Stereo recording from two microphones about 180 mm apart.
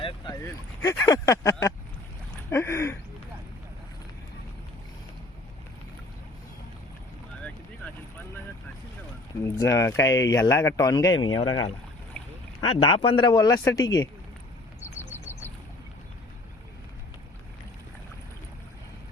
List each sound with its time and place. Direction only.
0.4 s speech: 15° left (ahead or behind)
2.5 s a sound: 15° left (ahead or behind)
9.4 s speech: 15° left (ahead or behind)